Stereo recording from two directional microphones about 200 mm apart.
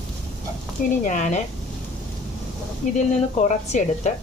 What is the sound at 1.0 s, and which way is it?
Speech, 35° left (ahead or behind).